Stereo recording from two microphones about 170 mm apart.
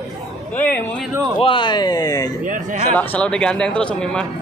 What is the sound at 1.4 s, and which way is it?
Speech, 30° left (ahead or behind).